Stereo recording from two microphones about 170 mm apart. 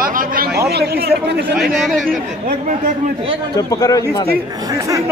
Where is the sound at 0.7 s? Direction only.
70° right (ahead or behind).